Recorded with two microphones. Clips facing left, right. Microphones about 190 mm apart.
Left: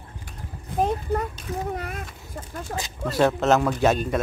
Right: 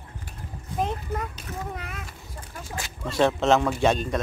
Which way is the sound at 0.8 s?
35° left (ahead or behind).